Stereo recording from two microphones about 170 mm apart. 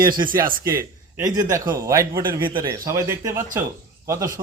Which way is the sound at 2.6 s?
20° right (ahead or behind).